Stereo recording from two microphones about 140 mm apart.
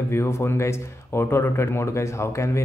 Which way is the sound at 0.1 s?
20° left (ahead or behind).